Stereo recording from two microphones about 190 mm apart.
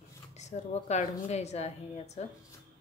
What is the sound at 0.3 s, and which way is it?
A woman's voice, 35° left (ahead or behind).